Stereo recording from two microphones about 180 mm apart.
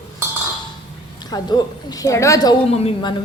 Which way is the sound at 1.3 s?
20° left (ahead or behind).